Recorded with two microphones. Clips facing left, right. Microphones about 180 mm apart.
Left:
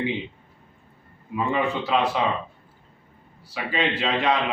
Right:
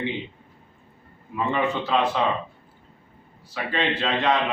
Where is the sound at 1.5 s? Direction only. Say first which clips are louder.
Even; 10° left (ahead or behind).